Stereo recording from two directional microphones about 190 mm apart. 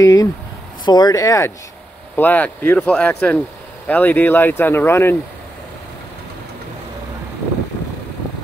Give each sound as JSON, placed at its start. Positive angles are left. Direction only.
{"t": 0.0, "sound": "speech", "side_deg": 20}